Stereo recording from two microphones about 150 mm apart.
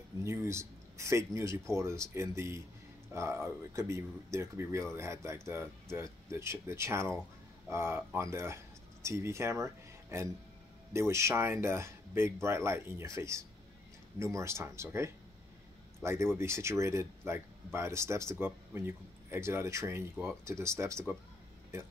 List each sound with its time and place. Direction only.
0.2 s speech: 20° right (ahead or behind)